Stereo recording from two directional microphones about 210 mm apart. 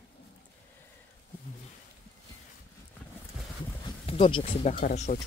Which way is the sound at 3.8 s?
25° left (ahead or behind).